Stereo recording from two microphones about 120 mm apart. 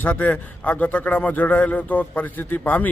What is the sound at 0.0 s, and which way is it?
A man's voice, 15° left (ahead or behind).